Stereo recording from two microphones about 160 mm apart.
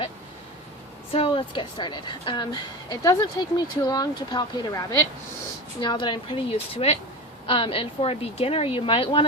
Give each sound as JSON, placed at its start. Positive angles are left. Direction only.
{"t": 1.1, "sound": "a woman's voice", "side_deg": 35}